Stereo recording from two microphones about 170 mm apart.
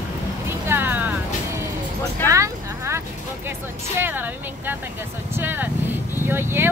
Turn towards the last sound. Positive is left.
turn(degrees=-15)  # may be behind; listen again after turning